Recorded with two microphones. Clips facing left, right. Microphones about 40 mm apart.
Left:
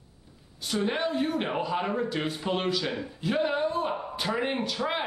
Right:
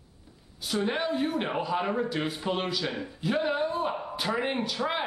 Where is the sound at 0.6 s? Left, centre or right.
Centre.